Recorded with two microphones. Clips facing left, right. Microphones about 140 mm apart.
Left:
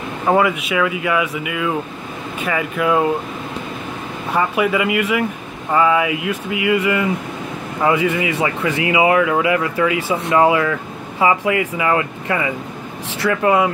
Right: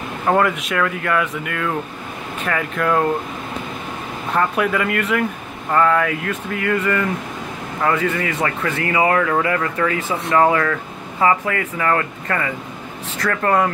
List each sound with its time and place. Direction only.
0.3 s speech: 5° left (ahead or behind)
4.3 s speech: 5° left (ahead or behind)